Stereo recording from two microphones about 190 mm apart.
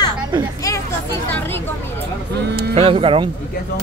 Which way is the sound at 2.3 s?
60° right (ahead or behind).